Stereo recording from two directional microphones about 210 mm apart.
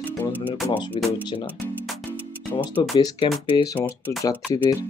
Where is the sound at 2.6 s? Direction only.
20° left (ahead or behind).